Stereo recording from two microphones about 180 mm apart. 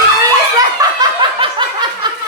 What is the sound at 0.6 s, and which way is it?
Snicker, 20° right (ahead or behind).